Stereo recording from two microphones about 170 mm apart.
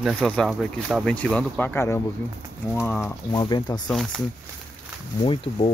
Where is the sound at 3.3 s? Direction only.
25° left (ahead or behind).